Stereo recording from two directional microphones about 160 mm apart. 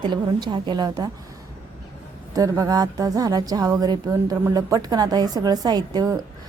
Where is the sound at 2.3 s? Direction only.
20° right (ahead or behind).